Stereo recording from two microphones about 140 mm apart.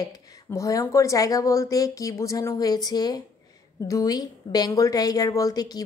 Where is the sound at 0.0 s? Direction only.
25° left (ahead or behind).